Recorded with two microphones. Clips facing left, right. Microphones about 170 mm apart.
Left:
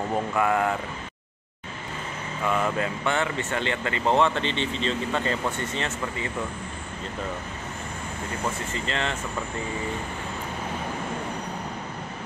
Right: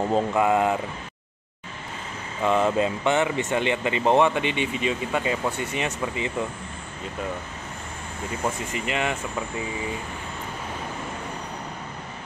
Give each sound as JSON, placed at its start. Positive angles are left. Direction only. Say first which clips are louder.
{"t": 0.1, "sound": "speech", "louder": "right 2 dB", "side_deg": -20}
{"t": 2.4, "sound": "speech", "louder": "right 4 dB", "side_deg": -20}
{"t": 8.7, "sound": "speech", "louder": "right 2 dB", "side_deg": -15}